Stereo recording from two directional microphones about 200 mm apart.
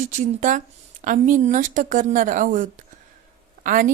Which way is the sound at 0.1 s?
40° right (ahead or behind).